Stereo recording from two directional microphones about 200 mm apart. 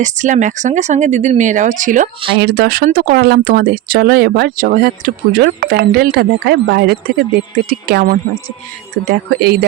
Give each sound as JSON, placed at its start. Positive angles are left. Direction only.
{"t": 0.0, "sound": "speech", "side_deg": -40}
{"t": 2.4, "sound": "speech", "side_deg": -50}